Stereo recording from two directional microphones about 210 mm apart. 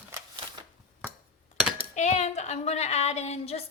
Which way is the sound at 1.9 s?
35° left (ahead or behind).